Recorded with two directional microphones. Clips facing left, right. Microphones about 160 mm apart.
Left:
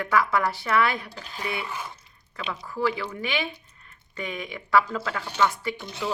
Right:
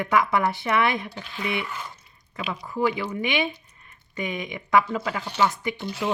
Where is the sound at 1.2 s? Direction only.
40° left (ahead or behind).